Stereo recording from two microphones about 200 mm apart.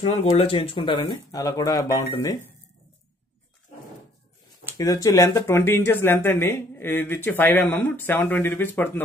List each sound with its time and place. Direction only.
0.0 s speech: 30° left (ahead or behind)
4.6 s speech: 15° left (ahead or behind)